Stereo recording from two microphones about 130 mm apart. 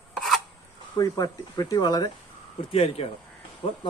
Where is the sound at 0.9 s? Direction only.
30° left (ahead or behind).